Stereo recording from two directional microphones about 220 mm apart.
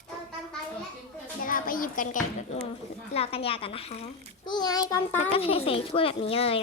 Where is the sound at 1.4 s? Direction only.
40° left (ahead or behind).